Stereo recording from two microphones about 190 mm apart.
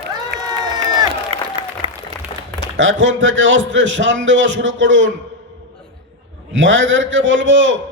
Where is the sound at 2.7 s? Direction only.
75° right (ahead or behind).